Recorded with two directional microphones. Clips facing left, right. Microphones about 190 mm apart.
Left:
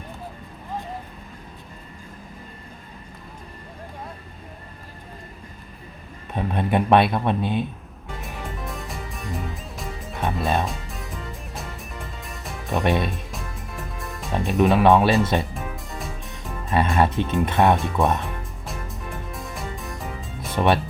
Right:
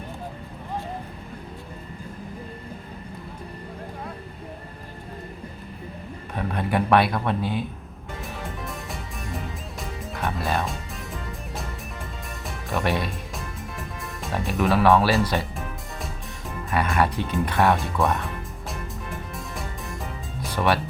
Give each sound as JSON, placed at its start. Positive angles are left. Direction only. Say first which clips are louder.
{"t": 6.3, "sound": "speech", "louder": "left 3 dB", "side_deg": 20}
{"t": 8.6, "sound": "music", "louder": "left 1 dB", "side_deg": 0}
{"t": 10.4, "sound": "speech", "louder": "left 3 dB", "side_deg": 20}
{"t": 10.7, "sound": "music", "louder": "even", "side_deg": 0}
{"t": 12.7, "sound": "speech", "louder": "left 3 dB", "side_deg": 20}
{"t": 13.1, "sound": "music", "louder": "left 1 dB", "side_deg": 0}
{"t": 14.6, "sound": "speech", "louder": "left 3 dB", "side_deg": 20}
{"t": 16.7, "sound": "speech", "louder": "left 3 dB", "side_deg": 25}
{"t": 19.5, "sound": "music", "louder": "even", "side_deg": 0}
{"t": 20.5, "sound": "speech", "louder": "left 3 dB", "side_deg": 25}